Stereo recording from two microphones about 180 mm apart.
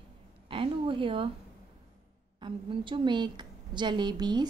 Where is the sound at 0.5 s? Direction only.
30° right (ahead or behind).